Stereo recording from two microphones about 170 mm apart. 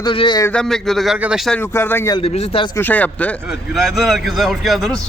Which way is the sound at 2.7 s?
10° left (ahead or behind).